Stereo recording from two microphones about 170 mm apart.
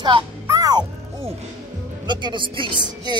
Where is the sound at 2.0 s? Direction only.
25° right (ahead or behind).